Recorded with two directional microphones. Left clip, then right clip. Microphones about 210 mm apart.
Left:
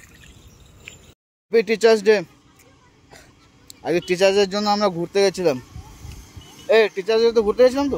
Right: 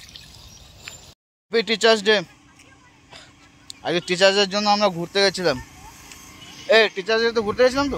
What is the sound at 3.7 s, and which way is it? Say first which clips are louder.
Speech: left 2 dB; 10° left (ahead or behind).